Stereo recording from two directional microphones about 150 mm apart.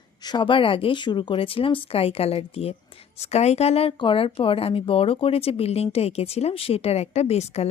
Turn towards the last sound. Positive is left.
turn(degrees=45)  # may be behind; listen again after turning